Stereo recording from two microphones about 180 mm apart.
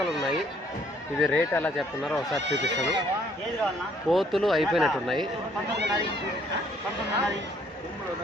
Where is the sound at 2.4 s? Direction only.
75° right (ahead or behind).